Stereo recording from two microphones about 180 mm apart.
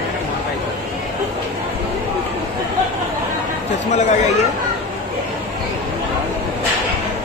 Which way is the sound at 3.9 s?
40° left (ahead or behind).